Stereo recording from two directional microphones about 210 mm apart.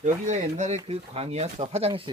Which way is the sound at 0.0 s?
35° right (ahead or behind).